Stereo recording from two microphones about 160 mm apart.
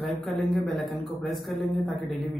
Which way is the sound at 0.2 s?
Centre (ahead or behind).